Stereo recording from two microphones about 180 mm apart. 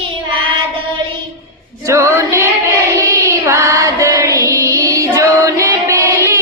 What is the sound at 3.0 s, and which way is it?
Child singing, 15° right (ahead or behind).